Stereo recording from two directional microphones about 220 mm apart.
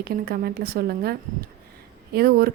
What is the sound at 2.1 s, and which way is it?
Speech, 45° right (ahead or behind).